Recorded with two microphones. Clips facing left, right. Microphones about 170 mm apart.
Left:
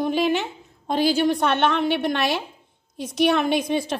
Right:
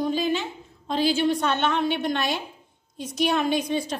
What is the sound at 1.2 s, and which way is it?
A woman's voice, 65° left (ahead or behind).